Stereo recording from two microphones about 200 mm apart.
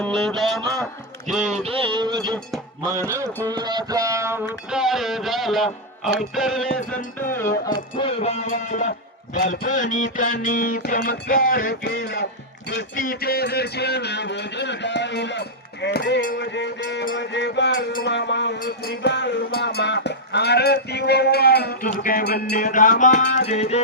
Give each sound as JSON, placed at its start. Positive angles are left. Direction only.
{"t": 0.2, "sound": "music", "side_deg": 0}
{"t": 1.5, "sound": "music", "side_deg": -30}
{"t": 6.9, "sound": "music", "side_deg": 10}
{"t": 7.9, "sound": "music", "side_deg": 30}
{"t": 8.4, "sound": "music", "side_deg": 40}
{"t": 13.0, "sound": "a sound", "side_deg": 45}
{"t": 16.2, "sound": "music", "side_deg": 45}
{"t": 16.5, "sound": "a sound", "side_deg": 60}
{"t": 23.5, "sound": "music", "side_deg": 35}